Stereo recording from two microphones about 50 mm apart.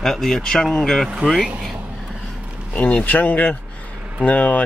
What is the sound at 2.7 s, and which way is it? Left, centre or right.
Speech, left.